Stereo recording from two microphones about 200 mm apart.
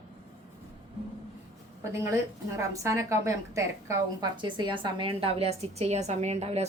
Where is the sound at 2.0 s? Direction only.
15° right (ahead or behind); by 6.7 s 30° right (ahead or behind).